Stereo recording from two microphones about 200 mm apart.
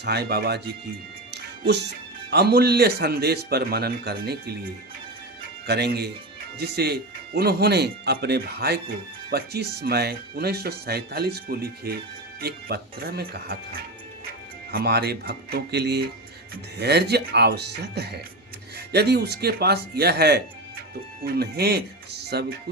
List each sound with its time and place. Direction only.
0.0 s speech: 55° right (ahead or behind)